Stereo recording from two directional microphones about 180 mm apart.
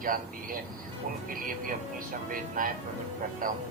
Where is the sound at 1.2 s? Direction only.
50° right (ahead or behind).